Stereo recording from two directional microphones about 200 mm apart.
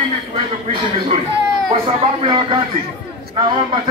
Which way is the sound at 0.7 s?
25° right (ahead or behind).